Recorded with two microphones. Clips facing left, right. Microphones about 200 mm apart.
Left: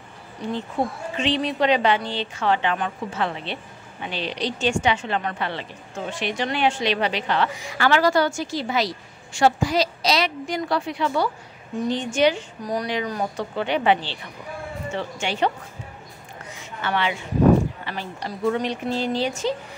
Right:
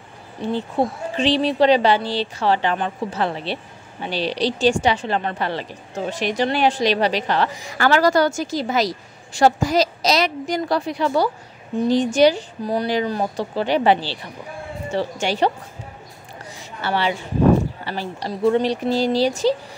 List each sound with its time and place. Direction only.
0.4 s a woman's voice: 30° right (ahead or behind)
16.4 s a sound: 35° right (ahead or behind)
17.8 s a woman's voice: 30° right (ahead or behind)